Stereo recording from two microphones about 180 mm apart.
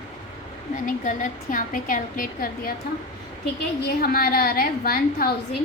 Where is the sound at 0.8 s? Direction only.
45° left (ahead or behind).